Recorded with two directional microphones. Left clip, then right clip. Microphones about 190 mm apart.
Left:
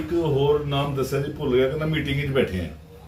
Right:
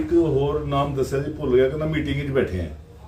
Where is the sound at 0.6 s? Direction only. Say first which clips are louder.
Right 2 dB; 10° right (ahead or behind).